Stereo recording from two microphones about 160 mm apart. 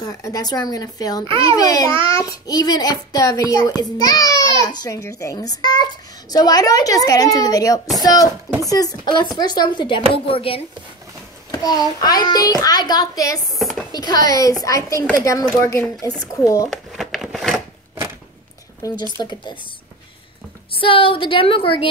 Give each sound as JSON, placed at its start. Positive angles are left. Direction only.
{"t": 0.0, "sound": "child singing", "side_deg": 20}
{"t": 1.9, "sound": "child singing", "side_deg": -35}
{"t": 2.1, "sound": "child singing", "side_deg": 25}
{"t": 10.1, "sound": "a woman's voice", "side_deg": 35}
{"t": 11.5, "sound": "child singing", "side_deg": 25}
{"t": 13.6, "sound": "a sound", "side_deg": 0}
{"t": 13.9, "sound": "child singing", "side_deg": 25}
{"t": 15.5, "sound": "speech", "side_deg": 15}
{"t": 16.7, "sound": "a sound", "side_deg": 0}
{"t": 18.8, "sound": "speech", "side_deg": 20}
{"t": 20.8, "sound": "a woman's voice", "side_deg": 35}